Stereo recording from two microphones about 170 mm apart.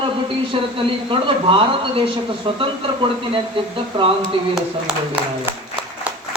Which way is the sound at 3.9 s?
30° right (ahead or behind).